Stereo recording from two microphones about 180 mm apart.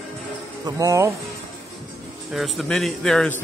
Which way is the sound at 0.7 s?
20° right (ahead or behind).